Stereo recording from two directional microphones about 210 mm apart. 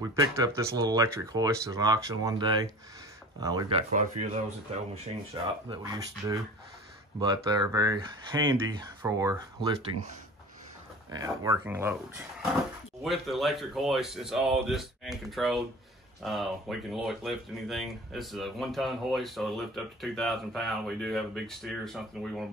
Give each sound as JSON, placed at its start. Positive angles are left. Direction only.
{"t": 0.0, "sound": "speech", "side_deg": -15}
{"t": 3.9, "sound": "speech", "side_deg": -35}
{"t": 5.8, "sound": "speech", "side_deg": -15}
{"t": 9.9, "sound": "speech", "side_deg": -90}
{"t": 11.1, "sound": "speech", "side_deg": -15}
{"t": 13.0, "sound": "speech", "side_deg": 0}